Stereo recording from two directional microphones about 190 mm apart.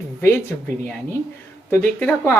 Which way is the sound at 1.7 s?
10° left (ahead or behind).